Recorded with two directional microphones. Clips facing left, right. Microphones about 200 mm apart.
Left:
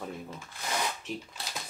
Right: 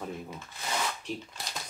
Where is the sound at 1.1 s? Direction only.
Centre (ahead or behind).